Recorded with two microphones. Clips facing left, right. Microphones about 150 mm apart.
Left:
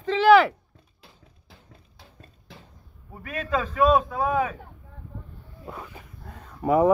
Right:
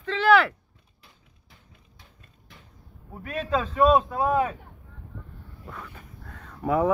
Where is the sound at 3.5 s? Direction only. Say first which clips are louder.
Even; 5° left (ahead or behind).